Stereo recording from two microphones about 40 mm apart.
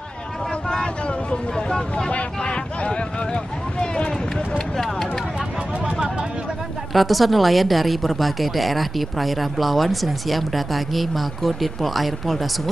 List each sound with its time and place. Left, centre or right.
1.0 s speech: centre
2.4 s a sound: left
3.8 s run: left
6.9 s a woman's voice: centre